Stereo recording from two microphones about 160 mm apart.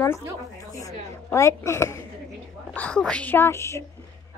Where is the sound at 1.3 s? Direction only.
15° left (ahead or behind).